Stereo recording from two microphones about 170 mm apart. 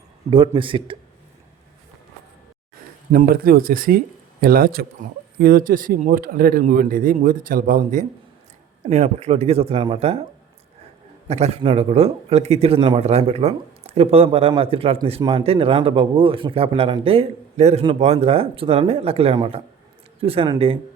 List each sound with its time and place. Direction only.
0.3 s a man's voice: 30° right (ahead or behind)
3.1 s a man's voice: 60° right (ahead or behind); by 10.2 s 35° right (ahead or behind)
11.3 s a man's voice: 40° right (ahead or behind)